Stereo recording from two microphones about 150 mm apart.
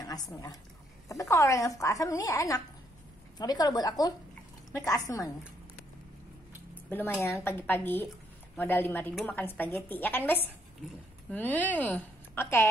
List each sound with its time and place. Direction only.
0.0 s a woman's voice: 25° left (ahead or behind)
6.7 s speech: 15° left (ahead or behind)